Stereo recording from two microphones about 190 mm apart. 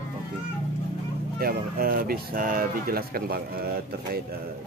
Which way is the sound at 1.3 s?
50° right (ahead or behind).